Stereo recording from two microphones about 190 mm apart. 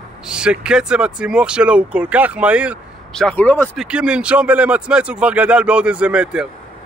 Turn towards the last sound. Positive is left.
turn(degrees=-5)  # may be behind; listen again after turning